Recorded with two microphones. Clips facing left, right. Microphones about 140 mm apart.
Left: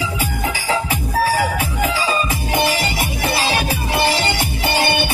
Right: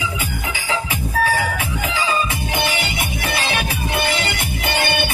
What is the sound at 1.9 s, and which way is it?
Music, 35° left (ahead or behind).